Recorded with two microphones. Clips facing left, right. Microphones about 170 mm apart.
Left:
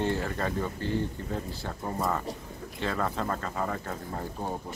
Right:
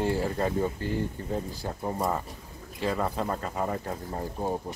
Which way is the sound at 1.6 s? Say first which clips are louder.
Right 2 dB; 15° right (ahead or behind).